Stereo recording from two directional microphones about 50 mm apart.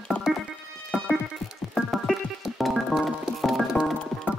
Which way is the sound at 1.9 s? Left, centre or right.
Centre.